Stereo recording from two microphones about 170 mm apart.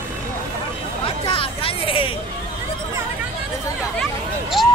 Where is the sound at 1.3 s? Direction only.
30° left (ahead or behind).